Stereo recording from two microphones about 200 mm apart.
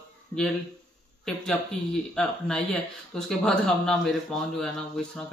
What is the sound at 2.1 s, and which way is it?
Speech, 5° left (ahead or behind).